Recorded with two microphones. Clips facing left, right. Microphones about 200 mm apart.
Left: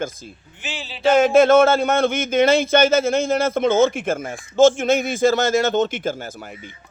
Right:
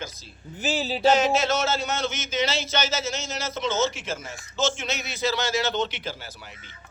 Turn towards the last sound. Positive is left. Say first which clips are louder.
# left 10 dB
turn(degrees=50)  # may be behind; listen again after turning